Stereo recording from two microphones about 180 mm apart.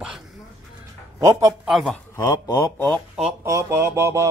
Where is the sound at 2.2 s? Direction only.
20° left (ahead or behind).